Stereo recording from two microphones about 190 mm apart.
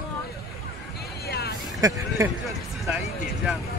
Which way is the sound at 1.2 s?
55° left (ahead or behind).